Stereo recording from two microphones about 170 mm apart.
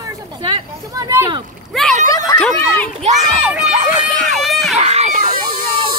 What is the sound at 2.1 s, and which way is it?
Speech, 20° left (ahead or behind).